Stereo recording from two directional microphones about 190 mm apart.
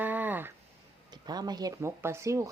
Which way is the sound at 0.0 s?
10° right (ahead or behind).